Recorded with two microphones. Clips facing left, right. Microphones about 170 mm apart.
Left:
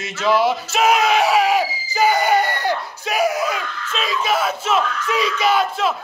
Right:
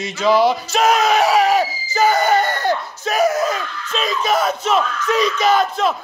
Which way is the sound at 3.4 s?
40° right (ahead or behind).